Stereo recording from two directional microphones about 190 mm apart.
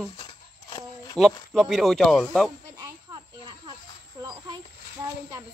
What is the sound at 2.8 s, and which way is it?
Snake, 20° right (ahead or behind).